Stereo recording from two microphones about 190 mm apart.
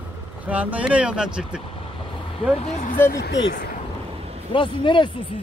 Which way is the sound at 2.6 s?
40° left (ahead or behind).